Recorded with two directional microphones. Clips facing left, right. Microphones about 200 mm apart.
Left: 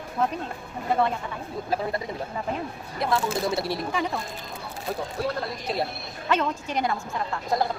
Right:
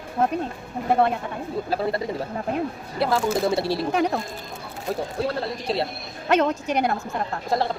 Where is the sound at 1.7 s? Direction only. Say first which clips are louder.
Right 2 dB; 35° right (ahead or behind).